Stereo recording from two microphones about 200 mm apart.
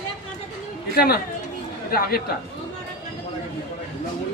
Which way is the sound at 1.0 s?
50° left (ahead or behind).